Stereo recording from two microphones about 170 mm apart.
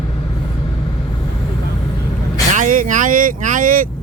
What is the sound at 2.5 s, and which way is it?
Vehicle, 50° right (ahead or behind).